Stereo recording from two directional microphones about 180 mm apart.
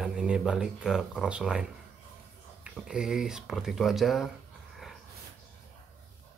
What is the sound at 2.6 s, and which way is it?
Speech, 5° right (ahead or behind).